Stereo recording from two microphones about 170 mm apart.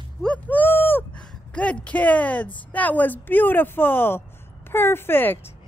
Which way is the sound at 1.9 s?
10° left (ahead or behind).